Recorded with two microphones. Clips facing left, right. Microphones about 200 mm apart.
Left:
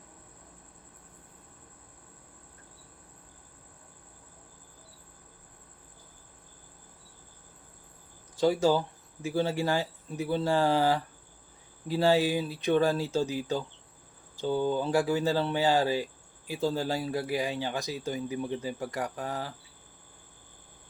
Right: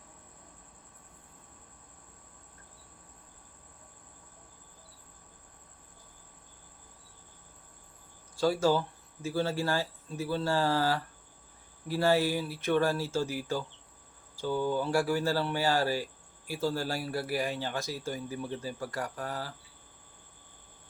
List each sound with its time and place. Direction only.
8.4 s speech: 20° left (ahead or behind)